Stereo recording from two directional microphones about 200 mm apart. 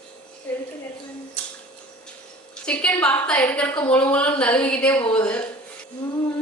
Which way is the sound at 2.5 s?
5° left (ahead or behind).